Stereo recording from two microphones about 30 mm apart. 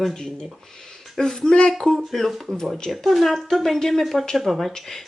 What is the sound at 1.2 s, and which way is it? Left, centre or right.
Speech, left.